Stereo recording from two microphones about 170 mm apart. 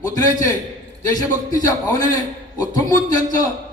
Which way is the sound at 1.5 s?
20° left (ahead or behind).